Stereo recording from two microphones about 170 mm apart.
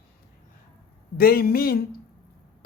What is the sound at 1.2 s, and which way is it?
Speech, 60° left (ahead or behind).